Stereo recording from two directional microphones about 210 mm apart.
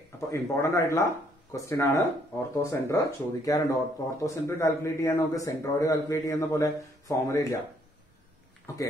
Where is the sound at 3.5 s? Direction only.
15° left (ahead or behind).